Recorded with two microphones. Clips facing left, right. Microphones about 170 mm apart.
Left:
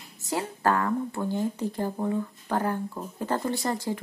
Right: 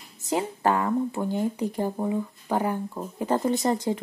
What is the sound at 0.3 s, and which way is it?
Speech, 20° right (ahead or behind).